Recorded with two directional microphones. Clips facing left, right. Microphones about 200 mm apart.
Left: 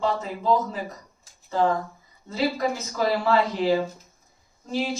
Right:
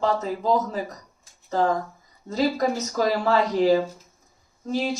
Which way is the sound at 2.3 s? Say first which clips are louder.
Right 2 dB; 40° right (ahead or behind).